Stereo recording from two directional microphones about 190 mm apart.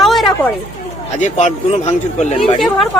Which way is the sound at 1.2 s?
40° left (ahead or behind).